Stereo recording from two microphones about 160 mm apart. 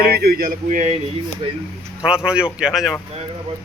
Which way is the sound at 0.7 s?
45° right (ahead or behind).